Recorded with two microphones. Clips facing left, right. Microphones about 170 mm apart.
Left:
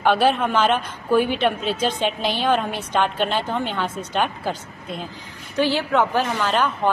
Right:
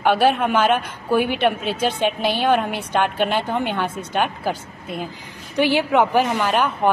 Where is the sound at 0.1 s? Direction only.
55° right (ahead or behind).